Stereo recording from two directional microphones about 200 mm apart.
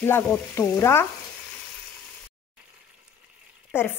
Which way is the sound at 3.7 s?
10° left (ahead or behind).